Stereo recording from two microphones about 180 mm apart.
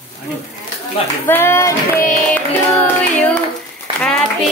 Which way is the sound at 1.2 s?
10° left (ahead or behind).